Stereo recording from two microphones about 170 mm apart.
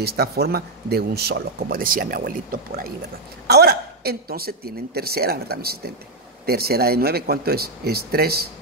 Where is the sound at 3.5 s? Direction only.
70° right (ahead or behind).